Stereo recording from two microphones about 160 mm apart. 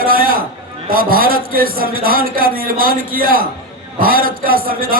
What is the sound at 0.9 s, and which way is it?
A man's voice, 65° right (ahead or behind).